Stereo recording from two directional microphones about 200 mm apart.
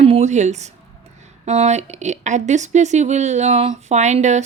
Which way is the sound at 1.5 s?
35° right (ahead or behind).